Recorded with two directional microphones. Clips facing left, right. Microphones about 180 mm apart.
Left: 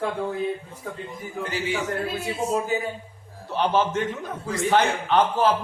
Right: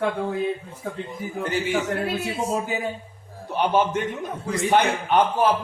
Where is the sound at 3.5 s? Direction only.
15° right (ahead or behind).